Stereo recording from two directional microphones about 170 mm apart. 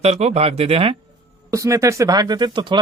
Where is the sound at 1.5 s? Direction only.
20° right (ahead or behind).